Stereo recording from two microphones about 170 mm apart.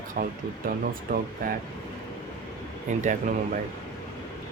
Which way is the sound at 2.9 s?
45° right (ahead or behind).